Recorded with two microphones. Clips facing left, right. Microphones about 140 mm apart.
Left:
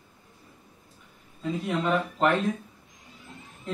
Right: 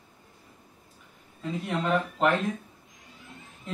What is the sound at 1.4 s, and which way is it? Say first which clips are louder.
Speech: left 2 dB; centre (ahead or behind).